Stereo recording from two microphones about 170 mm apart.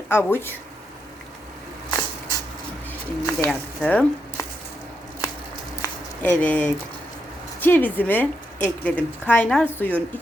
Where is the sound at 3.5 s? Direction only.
10° left (ahead or behind).